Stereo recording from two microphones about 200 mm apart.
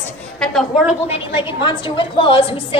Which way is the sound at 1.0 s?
30° left (ahead or behind).